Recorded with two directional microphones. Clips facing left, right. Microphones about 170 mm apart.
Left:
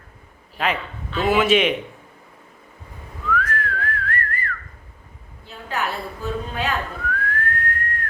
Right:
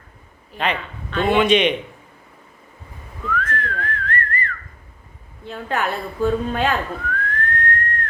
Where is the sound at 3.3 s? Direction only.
5° left (ahead or behind).